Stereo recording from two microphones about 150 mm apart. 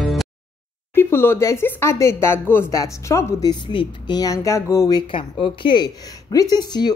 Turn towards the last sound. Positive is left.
turn(degrees=25)  # may be behind; listen again after turning